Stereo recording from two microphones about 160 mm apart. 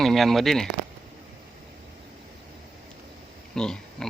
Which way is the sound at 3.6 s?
5° left (ahead or behind).